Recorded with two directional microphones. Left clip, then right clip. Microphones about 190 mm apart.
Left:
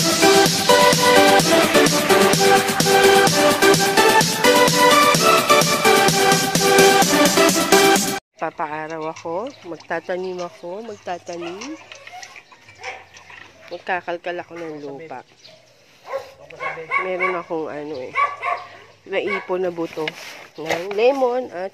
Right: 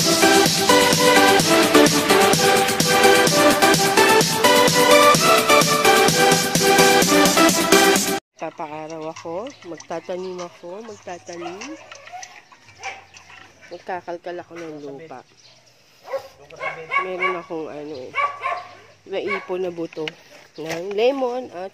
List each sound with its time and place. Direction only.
0.0 s music: centre (ahead or behind)
9.2 s a sound: 5° left (ahead or behind)
9.7 s speech: centre (ahead or behind)
10.7 s speech: 15° left (ahead or behind)
11.5 s a sound: 45° right (ahead or behind)
13.7 s speech: 5° left (ahead or behind)
16.5 s speech: 5° right (ahead or behind)
20.5 s speech: 10° right (ahead or behind)